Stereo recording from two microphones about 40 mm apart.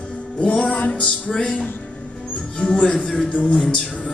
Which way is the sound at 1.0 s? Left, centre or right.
Left.